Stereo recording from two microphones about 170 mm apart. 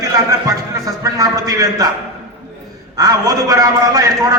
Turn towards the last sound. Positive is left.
turn(degrees=-20)  # may be behind; listen again after turning